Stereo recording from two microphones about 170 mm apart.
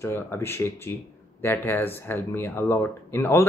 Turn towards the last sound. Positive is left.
turn(degrees=15)  # may be behind; listen again after turning